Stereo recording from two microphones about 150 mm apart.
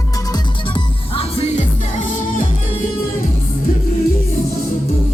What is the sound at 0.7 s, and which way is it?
Music, 40° left (ahead or behind).